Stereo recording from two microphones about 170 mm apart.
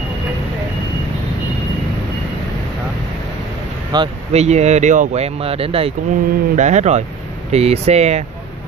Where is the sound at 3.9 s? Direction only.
25° right (ahead or behind).